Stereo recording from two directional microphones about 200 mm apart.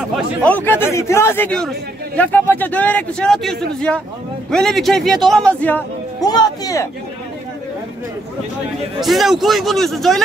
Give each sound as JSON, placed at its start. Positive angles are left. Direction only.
{"t": 0.4, "sound": "a man's voice", "side_deg": 10}
{"t": 6.2, "sound": "a man's voice", "side_deg": 20}
{"t": 9.0, "sound": "a man's voice", "side_deg": 0}